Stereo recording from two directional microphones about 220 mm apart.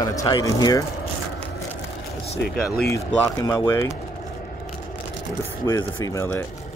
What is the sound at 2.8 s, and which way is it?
Speech, 15° left (ahead or behind).